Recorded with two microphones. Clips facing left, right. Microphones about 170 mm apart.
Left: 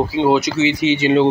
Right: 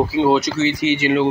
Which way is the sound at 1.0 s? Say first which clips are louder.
Left 4 dB; 25° left (ahead or behind).